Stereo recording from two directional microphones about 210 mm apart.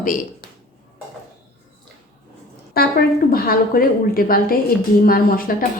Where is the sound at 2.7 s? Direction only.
45° left (ahead or behind).